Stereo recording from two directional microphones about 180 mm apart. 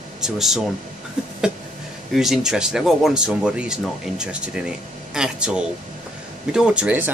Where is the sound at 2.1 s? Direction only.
5° right (ahead or behind).